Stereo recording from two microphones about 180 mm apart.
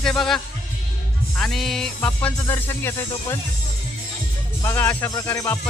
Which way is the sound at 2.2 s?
10° left (ahead or behind).